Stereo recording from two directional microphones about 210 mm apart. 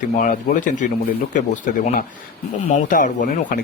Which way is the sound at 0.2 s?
40° left (ahead or behind).